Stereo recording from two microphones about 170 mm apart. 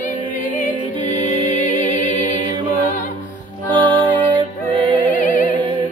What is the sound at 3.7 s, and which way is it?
Music, 30° right (ahead or behind).